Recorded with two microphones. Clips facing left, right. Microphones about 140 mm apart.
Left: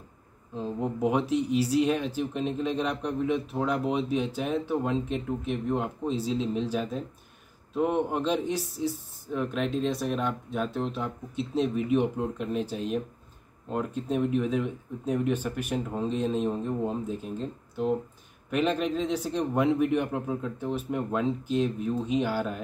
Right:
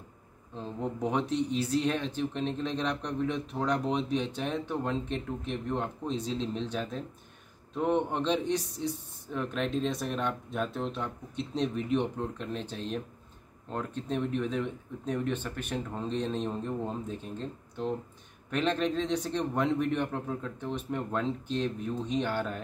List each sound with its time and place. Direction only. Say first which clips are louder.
0.6 s speech: left 4 dB; 10° left (ahead or behind)